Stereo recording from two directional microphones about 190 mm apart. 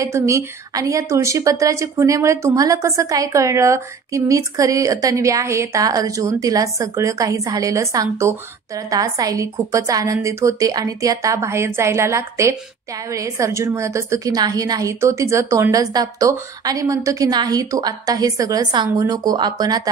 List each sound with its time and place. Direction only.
0.0 s a woman's voice: 15° right (ahead or behind)